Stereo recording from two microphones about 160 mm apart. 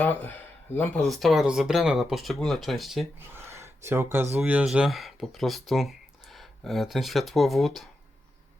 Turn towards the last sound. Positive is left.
turn(degrees=0)  # may be behind; listen again after turning